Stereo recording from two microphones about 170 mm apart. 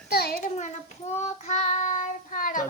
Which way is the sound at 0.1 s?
65° left (ahead or behind).